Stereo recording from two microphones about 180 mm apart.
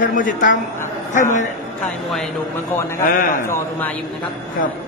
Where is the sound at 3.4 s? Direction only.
10° left (ahead or behind).